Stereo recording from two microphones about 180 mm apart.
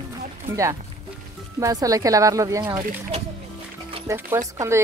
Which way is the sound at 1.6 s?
20° right (ahead or behind).